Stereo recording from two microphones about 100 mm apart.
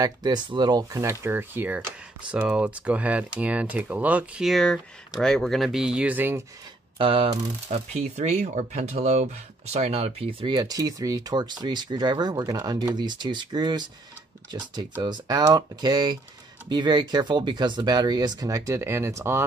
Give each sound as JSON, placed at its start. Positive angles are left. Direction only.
{"t": 0.0, "sound": "speech", "side_deg": -45}
{"t": 0.9, "sound": "speech", "side_deg": -25}
{"t": 2.3, "sound": "speech", "side_deg": -10}
{"t": 7.0, "sound": "speech", "side_deg": -65}
{"t": 10.5, "sound": "speech", "side_deg": -40}